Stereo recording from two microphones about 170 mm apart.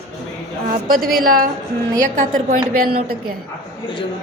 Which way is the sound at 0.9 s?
60° right (ahead or behind).